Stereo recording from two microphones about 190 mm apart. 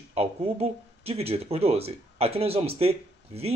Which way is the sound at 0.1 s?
30° right (ahead or behind).